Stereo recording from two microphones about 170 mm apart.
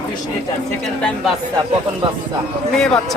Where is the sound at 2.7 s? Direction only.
5° left (ahead or behind).